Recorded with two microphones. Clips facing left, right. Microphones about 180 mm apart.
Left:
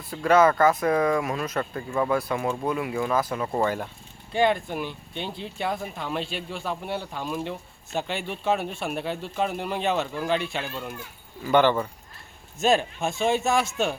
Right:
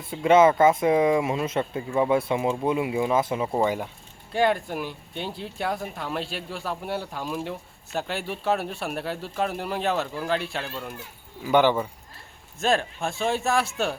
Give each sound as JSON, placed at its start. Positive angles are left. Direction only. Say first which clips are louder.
{"t": 0.0, "sound": "speech", "louder": "right 2 dB", "side_deg": -25}
{"t": 3.4, "sound": "speech", "louder": "right 1 dB", "side_deg": -15}
{"t": 12.6, "sound": "speech", "louder": "left 2 dB", "side_deg": 5}